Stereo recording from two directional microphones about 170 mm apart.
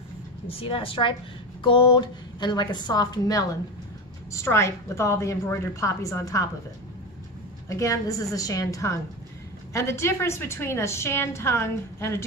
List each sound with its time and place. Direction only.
0.5 s a woman's voice: 30° left (ahead or behind)
7.6 s a woman's voice: 20° left (ahead or behind)